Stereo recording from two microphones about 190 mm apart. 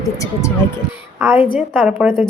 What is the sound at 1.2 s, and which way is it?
A woman's voice, 15° right (ahead or behind).